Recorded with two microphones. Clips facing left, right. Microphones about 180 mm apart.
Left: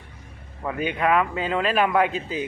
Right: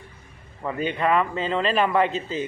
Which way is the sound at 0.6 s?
5° left (ahead or behind).